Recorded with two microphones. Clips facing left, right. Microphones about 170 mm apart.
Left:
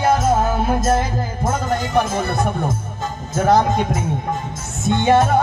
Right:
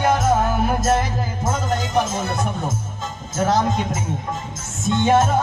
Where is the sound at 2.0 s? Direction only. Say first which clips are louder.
Left 3 dB; 60° left (ahead or behind).